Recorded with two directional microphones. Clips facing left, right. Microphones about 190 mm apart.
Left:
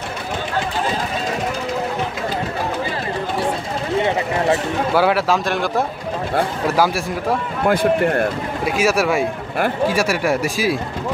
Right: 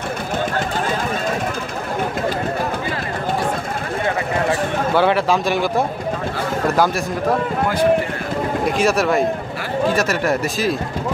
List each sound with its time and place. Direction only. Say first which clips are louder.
4.9 s speech: even; 5° left (ahead or behind)
7.6 s speech: left 3 dB; 55° left (ahead or behind)
8.6 s speech: left 1 dB; 5° left (ahead or behind)